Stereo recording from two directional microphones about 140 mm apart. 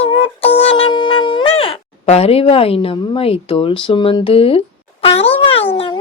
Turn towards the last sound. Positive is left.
turn(degrees=40)  # may be behind; listen again after turning